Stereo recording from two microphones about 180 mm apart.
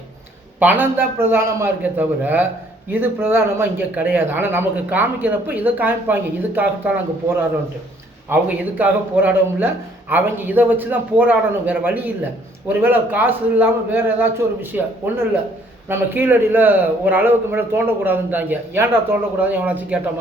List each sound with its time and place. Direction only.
0.6 s speech: 10° right (ahead or behind)